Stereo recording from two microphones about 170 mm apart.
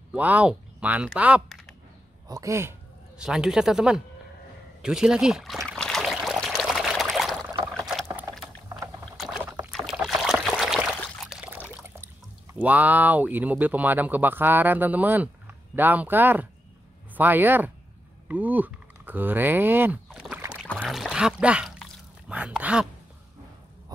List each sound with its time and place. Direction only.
0.1 s speech: 10° right (ahead or behind)
2.2 s speech: 20° right (ahead or behind)
3.2 s speech: 5° right (ahead or behind)
5.8 s pour: 5° left (ahead or behind)
7.7 s rowboat: centre (ahead or behind)
9.7 s trickle: centre (ahead or behind)
11.2 s a sound: 5° right (ahead or behind)
12.5 s speech: 10° right (ahead or behind)
20.1 s rowboat: 5° right (ahead or behind)
20.8 s a sound: centre (ahead or behind)